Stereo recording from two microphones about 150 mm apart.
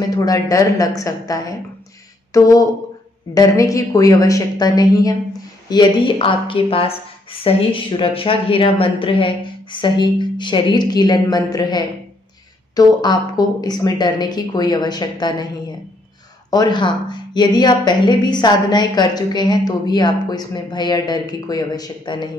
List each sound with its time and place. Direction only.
0.1 s a woman's voice: 25° left (ahead or behind)
16.4 s a woman's voice: 25° left (ahead or behind)